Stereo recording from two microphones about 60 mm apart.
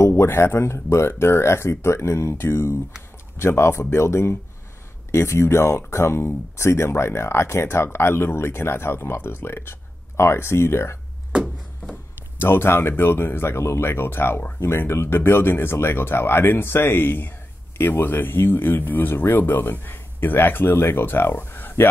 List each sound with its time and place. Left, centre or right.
0.0 s speech: left
12.4 s speech: left